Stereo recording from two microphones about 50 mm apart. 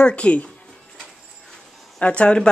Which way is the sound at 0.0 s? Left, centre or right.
Left.